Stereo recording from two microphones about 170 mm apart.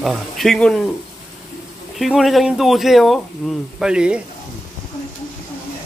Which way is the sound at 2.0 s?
Centre (ahead or behind).